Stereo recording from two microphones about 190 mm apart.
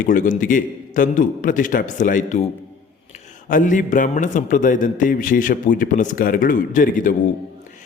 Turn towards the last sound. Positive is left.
turn(degrees=45)  # may be behind; listen again after turning